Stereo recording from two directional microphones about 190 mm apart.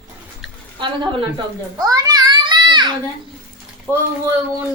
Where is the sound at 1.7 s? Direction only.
20° right (ahead or behind).